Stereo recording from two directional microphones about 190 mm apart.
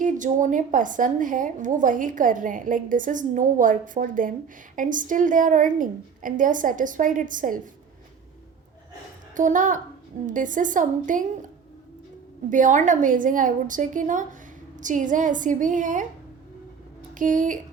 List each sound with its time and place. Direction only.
0.0 s a woman's voice: 40° right (ahead or behind)
9.3 s a woman's voice: 40° right (ahead or behind)
17.2 s a woman's voice: 45° right (ahead or behind)